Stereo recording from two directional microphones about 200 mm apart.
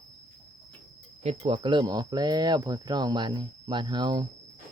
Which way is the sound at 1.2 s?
30° right (ahead or behind).